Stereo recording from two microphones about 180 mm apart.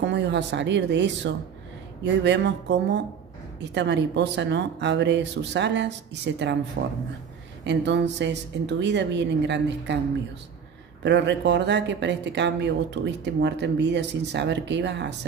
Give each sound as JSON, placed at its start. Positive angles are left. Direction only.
{"t": 0.0, "sound": "speech", "side_deg": -80}
{"t": 11.0, "sound": "speech", "side_deg": -75}